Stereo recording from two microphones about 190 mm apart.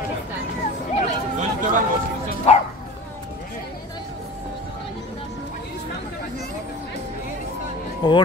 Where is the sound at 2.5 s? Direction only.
35° left (ahead or behind).